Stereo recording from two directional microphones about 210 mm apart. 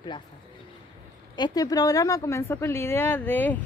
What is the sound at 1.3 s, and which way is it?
A woman's voice, 20° left (ahead or behind).